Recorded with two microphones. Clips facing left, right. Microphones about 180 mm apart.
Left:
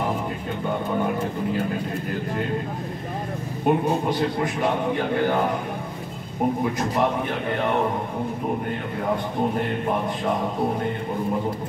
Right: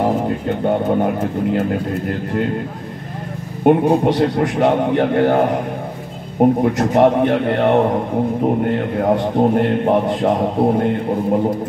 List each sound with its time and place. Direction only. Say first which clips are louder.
0.7 s speech: right 7 dB; 65° right (ahead or behind)
3.6 s a man's voice: right 8 dB; 70° right (ahead or behind)
6.6 s a man's voice: right 9 dB; 70° right (ahead or behind)
9.0 s a man's voice: right 8 dB; 70° right (ahead or behind)